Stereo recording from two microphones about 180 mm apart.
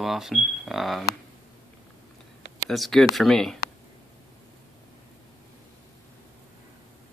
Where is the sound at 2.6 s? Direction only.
Centre (ahead or behind).